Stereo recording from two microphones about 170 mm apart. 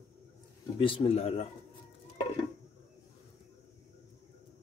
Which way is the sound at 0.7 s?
30° left (ahead or behind).